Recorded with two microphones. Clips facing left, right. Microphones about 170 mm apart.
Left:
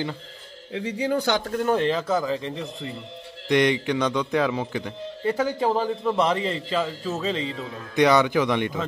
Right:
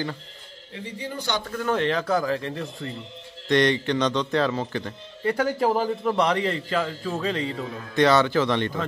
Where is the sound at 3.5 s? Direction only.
15° left (ahead or behind).